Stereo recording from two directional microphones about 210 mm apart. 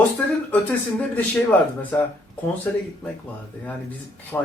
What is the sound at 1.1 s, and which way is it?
Speech, 10° left (ahead or behind).